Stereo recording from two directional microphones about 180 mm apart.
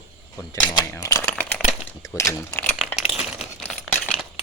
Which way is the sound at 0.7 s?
20° left (ahead or behind).